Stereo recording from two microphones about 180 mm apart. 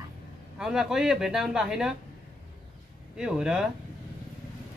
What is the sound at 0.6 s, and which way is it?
Speech, 5° right (ahead or behind).